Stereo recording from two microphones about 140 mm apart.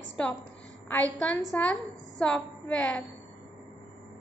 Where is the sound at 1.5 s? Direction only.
10° left (ahead or behind).